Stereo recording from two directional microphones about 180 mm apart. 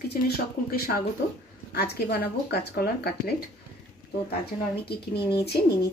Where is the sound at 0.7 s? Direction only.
55° left (ahead or behind).